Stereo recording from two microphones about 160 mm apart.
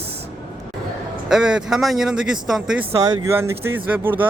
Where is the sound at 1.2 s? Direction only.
5° right (ahead or behind).